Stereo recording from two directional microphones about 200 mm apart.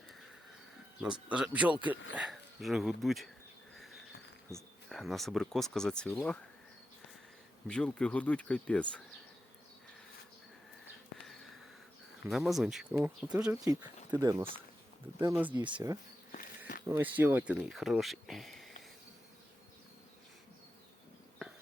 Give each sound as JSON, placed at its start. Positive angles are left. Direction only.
{"t": 1.0, "sound": "speech", "side_deg": -5}
{"t": 4.9, "sound": "speech", "side_deg": 0}
{"t": 7.7, "sound": "speech", "side_deg": 5}
{"t": 12.2, "sound": "speech", "side_deg": 0}
{"t": 13.7, "sound": "speech", "side_deg": -15}
{"t": 15.5, "sound": "speech", "side_deg": -25}
{"t": 16.9, "sound": "speech", "side_deg": -10}